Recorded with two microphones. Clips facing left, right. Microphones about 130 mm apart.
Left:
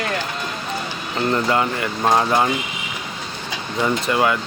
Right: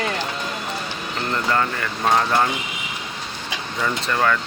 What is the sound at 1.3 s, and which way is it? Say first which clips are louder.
Speech: left 2 dB; 15° left (ahead or behind).